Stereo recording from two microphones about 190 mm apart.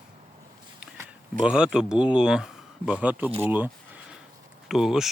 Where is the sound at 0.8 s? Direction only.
5° right (ahead or behind).